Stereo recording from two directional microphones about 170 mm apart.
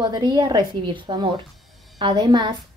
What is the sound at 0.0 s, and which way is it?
Speech, 25° right (ahead or behind).